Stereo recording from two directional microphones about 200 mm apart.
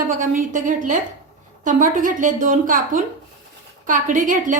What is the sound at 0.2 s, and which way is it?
A woman's voice, 40° right (ahead or behind).